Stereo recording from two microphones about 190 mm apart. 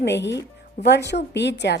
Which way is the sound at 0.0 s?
65° left (ahead or behind).